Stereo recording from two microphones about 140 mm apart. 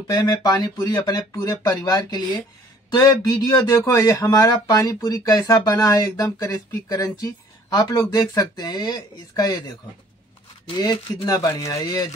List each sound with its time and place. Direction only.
0.0 s speech: 25° left (ahead or behind)
11.2 s speech: 25° left (ahead or behind)